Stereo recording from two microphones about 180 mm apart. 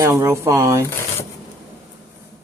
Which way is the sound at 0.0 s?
15° right (ahead or behind).